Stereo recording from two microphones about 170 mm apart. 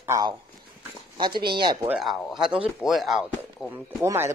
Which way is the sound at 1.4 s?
70° right (ahead or behind).